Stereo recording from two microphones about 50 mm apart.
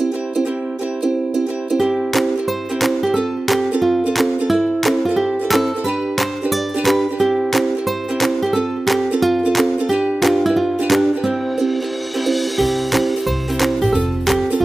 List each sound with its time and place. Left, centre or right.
1.7 s music: centre
4.2 s music: centre
6.8 s music: centre
9.5 s music: centre